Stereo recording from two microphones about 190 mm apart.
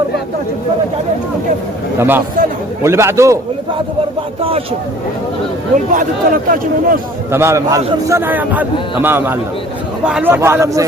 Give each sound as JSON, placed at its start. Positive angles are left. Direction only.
{"t": 2.0, "sound": "a man's voice", "side_deg": -10}
{"t": 5.7, "sound": "speech", "side_deg": -40}
{"t": 7.3, "sound": "a man's voice", "side_deg": -15}